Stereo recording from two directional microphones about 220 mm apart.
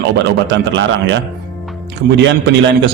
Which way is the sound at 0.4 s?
55° right (ahead or behind).